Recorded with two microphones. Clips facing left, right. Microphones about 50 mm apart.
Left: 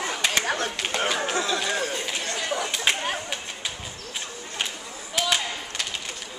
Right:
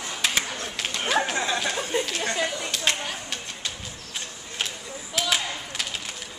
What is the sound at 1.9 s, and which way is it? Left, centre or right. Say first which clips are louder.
Chatter: right 5 dB; right.